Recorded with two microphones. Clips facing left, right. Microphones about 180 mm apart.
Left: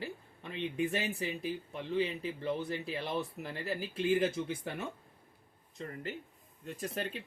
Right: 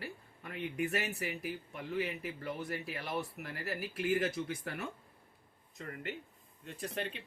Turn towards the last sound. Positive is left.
turn(degrees=40)  # may be behind; listen again after turning